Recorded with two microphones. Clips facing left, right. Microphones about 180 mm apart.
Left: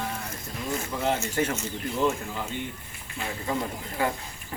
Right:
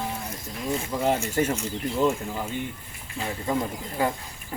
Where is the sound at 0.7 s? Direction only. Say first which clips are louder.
Right 3 dB; 10° right (ahead or behind).